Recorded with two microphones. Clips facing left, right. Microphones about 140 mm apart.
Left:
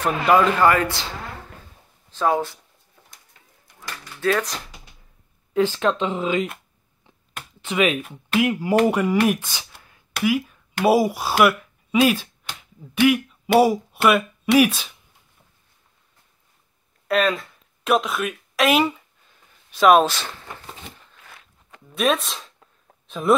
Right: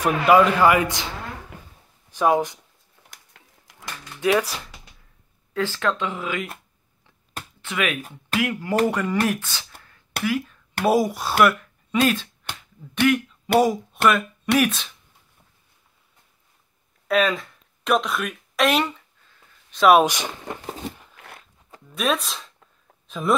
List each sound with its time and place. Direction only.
0.0 s speech: 10° right (ahead or behind)
2.0 s speech: 15° right (ahead or behind)
3.8 s typewriter: 15° right (ahead or behind)
5.5 s speech: 20° left (ahead or behind)
7.6 s speech: 20° left (ahead or behind)
9.8 s a sound: 15° left (ahead or behind)
10.2 s speech: 10° left (ahead or behind)
13.0 s a sound: 10° left (ahead or behind)
14.0 s speech: 10° left (ahead or behind)
17.1 s speech: centre (ahead or behind)
20.0 s speech: 15° right (ahead or behind)
21.9 s a sound: centre (ahead or behind)